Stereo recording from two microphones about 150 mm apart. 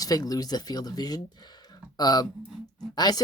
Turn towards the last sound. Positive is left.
turn(degrees=30)  # may be behind; listen again after turning